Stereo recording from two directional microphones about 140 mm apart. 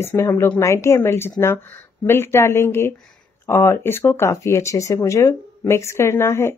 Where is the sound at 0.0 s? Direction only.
15° left (ahead or behind).